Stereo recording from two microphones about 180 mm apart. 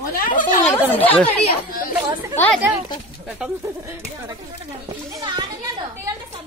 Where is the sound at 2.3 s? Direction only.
10° left (ahead or behind).